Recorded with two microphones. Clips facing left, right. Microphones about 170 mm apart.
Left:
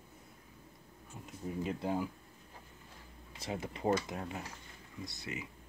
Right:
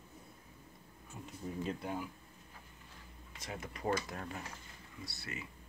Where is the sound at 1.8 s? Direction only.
25° left (ahead or behind).